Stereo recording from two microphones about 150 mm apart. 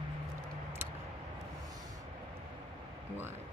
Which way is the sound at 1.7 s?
25° right (ahead or behind).